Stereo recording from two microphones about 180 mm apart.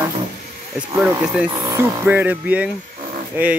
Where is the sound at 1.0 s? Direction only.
10° right (ahead or behind).